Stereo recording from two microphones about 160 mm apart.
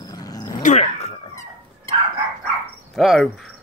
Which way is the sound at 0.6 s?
50° left (ahead or behind).